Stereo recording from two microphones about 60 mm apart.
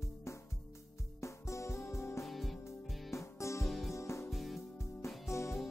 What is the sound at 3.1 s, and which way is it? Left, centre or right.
Music, left.